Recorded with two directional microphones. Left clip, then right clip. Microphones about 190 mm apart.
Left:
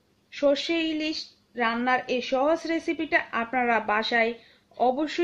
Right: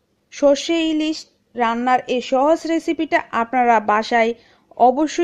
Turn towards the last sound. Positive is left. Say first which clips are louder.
# right 9 dB
turn(degrees=-40)  # may be behind; listen again after turning